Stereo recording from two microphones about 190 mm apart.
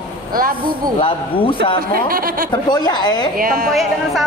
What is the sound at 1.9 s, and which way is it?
Speech, 50° right (ahead or behind).